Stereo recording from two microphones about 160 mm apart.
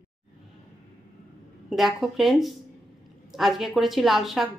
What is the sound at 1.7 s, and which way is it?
Speech, centre (ahead or behind).